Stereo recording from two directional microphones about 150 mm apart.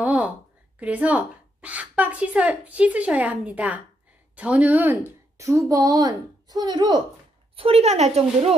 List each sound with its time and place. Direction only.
0.0 s a sound: 10° right (ahead or behind)
0.7 s a woman's voice: 10° right (ahead or behind); by 7.0 s 30° right (ahead or behind)
7.5 s speech: 40° right (ahead or behind)